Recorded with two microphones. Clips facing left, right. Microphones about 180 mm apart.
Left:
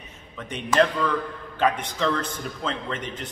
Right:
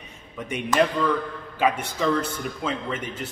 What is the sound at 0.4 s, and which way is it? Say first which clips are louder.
A man's voice: even; 10° right (ahead or behind).